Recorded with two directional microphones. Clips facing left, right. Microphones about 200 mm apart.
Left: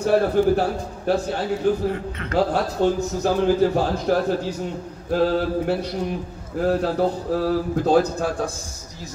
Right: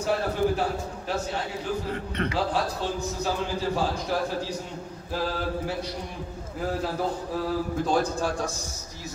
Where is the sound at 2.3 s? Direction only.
55° left (ahead or behind).